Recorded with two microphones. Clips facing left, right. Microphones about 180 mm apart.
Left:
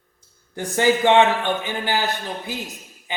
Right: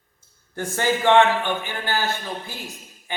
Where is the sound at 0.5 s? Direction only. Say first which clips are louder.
Left 4 dB; 15° left (ahead or behind).